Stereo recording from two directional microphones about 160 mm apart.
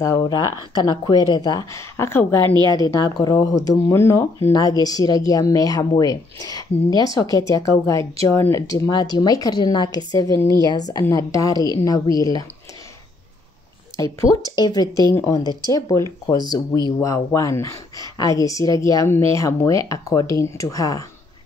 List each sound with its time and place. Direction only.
0.0 s speech: 25° left (ahead or behind)
2.9 s speech: 25° left (ahead or behind)
14.2 s speech: 25° left (ahead or behind)